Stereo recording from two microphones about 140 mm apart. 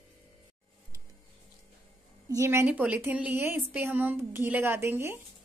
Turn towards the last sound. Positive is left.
turn(degrees=-20)  # may be behind; listen again after turning